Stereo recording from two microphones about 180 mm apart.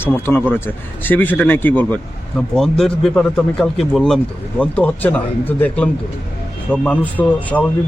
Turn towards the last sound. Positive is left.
turn(degrees=10)  # may be behind; listen again after turning